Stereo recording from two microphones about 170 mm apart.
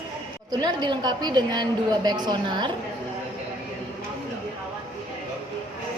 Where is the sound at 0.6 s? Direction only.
25° right (ahead or behind).